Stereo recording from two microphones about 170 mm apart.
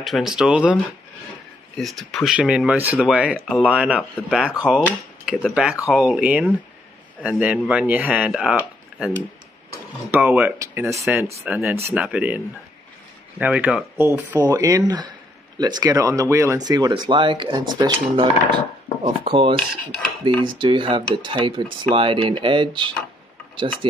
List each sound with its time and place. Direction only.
0.0 s speech: centre (ahead or behind)
1.8 s speech: centre (ahead or behind)
10.1 s speech: 10° right (ahead or behind)
13.4 s speech: 10° right (ahead or behind); by 19.5 s 30° right (ahead or behind)
20.5 s speech: 30° right (ahead or behind)